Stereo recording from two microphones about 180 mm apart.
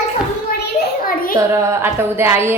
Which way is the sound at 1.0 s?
50° left (ahead or behind).